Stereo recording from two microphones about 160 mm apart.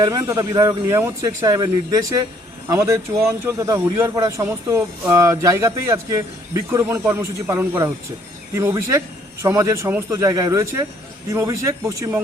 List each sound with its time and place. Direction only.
0.0 s speech: 20° right (ahead or behind)